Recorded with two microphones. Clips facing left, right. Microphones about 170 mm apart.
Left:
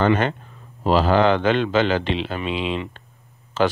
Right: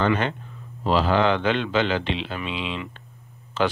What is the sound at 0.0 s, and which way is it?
Speech, 45° left (ahead or behind).